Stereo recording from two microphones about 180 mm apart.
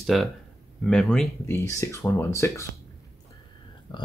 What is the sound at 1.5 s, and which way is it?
Speech, 15° left (ahead or behind).